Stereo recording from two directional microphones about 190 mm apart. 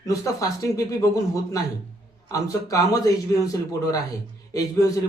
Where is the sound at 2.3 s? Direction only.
15° left (ahead or behind).